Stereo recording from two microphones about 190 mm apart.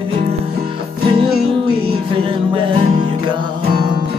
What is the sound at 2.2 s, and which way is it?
Music, 30° right (ahead or behind).